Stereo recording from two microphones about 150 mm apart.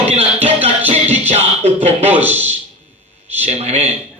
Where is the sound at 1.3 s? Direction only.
45° right (ahead or behind).